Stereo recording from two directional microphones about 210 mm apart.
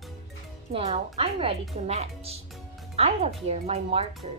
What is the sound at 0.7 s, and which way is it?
A woman's voice, 35° right (ahead or behind).